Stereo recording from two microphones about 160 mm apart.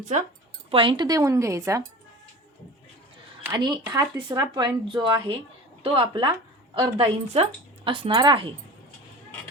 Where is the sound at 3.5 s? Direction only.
25° right (ahead or behind).